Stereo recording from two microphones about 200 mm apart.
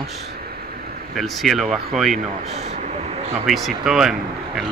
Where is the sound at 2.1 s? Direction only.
35° right (ahead or behind).